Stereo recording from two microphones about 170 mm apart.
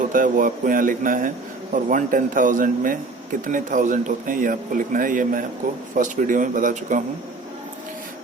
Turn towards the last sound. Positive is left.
turn(degrees=-50)  # may be behind; listen again after turning